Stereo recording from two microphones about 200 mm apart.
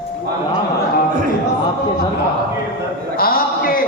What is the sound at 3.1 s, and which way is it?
Speech, 50° left (ahead or behind).